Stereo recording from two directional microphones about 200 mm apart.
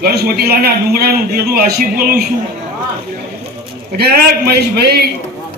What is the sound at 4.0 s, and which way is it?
Speech, 50° right (ahead or behind).